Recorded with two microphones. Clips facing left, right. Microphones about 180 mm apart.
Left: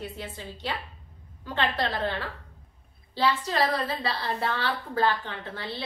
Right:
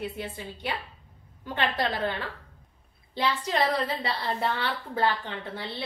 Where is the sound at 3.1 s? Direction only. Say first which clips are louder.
Left 1 dB; 15° right (ahead or behind).